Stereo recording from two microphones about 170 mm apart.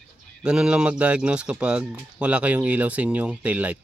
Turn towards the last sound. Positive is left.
turn(degrees=-5)  # may be behind; listen again after turning